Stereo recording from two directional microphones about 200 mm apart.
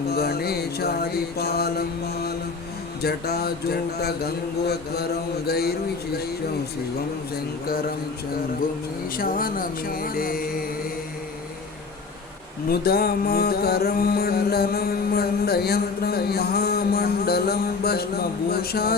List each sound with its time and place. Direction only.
0.1 s music: 50° left (ahead or behind)
3.0 s music: 50° left (ahead or behind)
9.1 s music: 45° left (ahead or behind)
12.6 s music: 50° left (ahead or behind)